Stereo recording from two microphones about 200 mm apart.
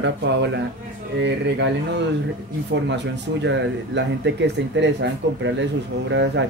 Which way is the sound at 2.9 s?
60° right (ahead or behind).